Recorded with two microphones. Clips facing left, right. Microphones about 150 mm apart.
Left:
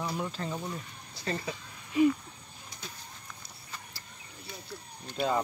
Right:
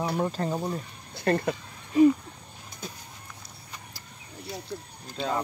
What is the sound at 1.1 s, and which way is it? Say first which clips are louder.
Speech: right 10 dB; 60° right (ahead or behind).